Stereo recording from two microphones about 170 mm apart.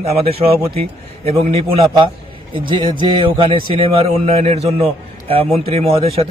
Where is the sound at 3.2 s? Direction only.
30° right (ahead or behind).